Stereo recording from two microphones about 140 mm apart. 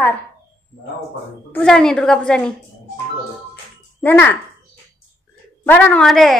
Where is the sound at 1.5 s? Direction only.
10° left (ahead or behind).